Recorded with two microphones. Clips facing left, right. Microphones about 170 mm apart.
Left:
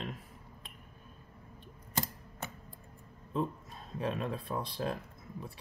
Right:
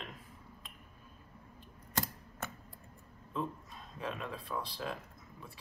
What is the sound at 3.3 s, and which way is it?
Speech, 35° left (ahead or behind).